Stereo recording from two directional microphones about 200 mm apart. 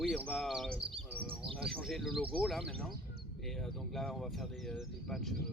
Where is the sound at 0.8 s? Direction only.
25° right (ahead or behind).